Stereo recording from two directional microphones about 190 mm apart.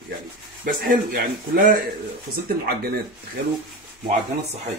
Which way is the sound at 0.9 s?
45° right (ahead or behind).